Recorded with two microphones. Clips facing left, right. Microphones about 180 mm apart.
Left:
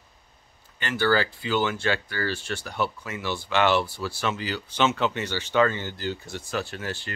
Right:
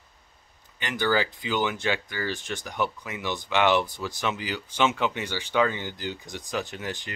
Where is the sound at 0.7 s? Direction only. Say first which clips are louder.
Left 2 dB; 15° right (ahead or behind).